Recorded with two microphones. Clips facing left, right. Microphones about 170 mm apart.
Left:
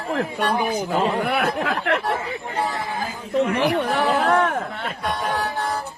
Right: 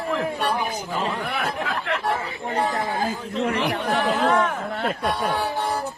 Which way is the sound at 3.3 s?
55° left (ahead or behind).